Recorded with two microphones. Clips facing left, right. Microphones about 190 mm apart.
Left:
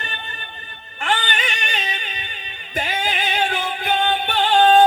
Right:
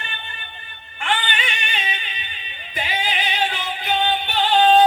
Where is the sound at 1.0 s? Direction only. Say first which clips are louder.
Left 1 dB; 45° left (ahead or behind).